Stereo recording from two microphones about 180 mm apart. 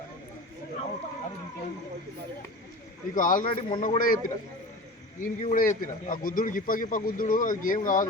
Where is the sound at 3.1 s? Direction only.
50° left (ahead or behind).